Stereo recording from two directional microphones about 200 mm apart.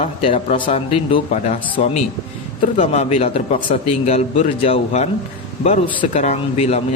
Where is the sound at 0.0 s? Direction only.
30° left (ahead or behind).